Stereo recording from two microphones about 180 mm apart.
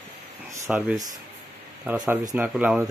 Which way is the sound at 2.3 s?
10° right (ahead or behind).